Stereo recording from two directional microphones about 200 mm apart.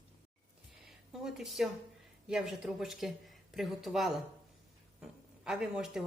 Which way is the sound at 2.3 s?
5° right (ahead or behind).